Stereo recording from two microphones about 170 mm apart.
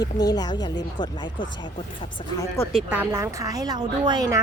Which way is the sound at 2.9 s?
10° right (ahead or behind).